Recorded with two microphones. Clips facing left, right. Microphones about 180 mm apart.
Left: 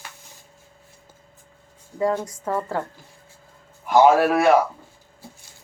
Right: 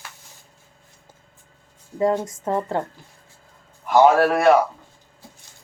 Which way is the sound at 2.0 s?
20° right (ahead or behind).